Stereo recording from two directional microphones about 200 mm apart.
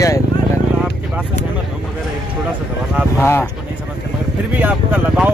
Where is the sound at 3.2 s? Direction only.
10° left (ahead or behind).